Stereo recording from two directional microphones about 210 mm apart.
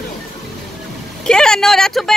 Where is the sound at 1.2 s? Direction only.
5° left (ahead or behind).